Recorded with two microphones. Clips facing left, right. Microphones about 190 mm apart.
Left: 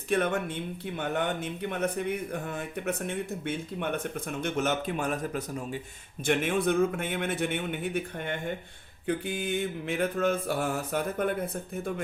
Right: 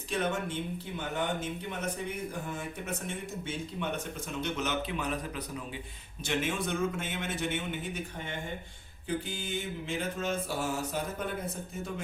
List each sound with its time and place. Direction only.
0.1 s mantra: 60° left (ahead or behind)
2.8 s speech: 65° left (ahead or behind); by 5.4 s 45° left (ahead or behind)
6.2 s mantra: 55° left (ahead or behind)